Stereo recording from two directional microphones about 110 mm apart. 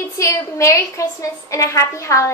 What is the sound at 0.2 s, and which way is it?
A woman's voice, 30° left (ahead or behind).